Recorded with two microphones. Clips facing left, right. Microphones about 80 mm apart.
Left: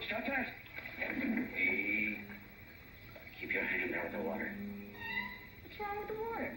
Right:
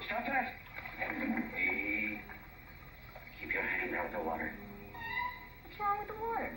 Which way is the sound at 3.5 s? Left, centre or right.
Right.